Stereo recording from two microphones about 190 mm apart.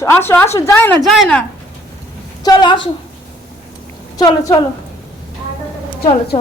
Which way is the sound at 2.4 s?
25° left (ahead or behind).